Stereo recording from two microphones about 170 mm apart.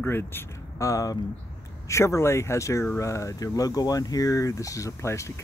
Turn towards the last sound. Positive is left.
turn(degrees=15)  # may be behind; listen again after turning